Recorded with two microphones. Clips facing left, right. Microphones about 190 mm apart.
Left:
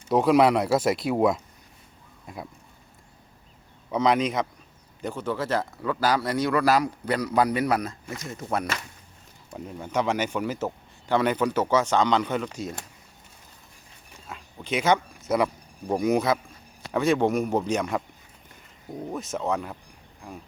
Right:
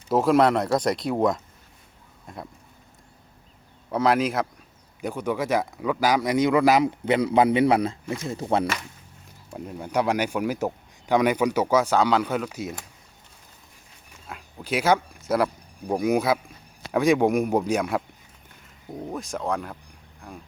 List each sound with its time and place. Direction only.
0.1 s speech: centre (ahead or behind)
3.9 s speech: 5° right (ahead or behind); by 8.6 s 30° right (ahead or behind)
9.5 s speech: 5° right (ahead or behind)
14.3 s speech: 5° right (ahead or behind)
19.1 s speech: 5° left (ahead or behind)